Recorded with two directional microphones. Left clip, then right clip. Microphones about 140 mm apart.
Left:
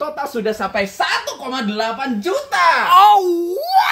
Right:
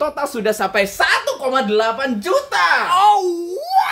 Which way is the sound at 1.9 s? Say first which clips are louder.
Right 1 dB; 30° right (ahead or behind).